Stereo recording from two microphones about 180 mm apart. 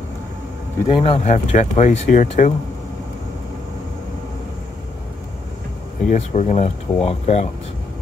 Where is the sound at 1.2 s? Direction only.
40° left (ahead or behind).